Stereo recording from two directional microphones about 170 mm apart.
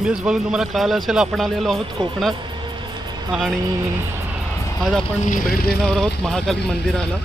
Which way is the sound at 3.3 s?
5° right (ahead or behind).